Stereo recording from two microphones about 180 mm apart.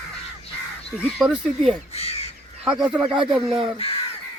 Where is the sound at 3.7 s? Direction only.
30° left (ahead or behind).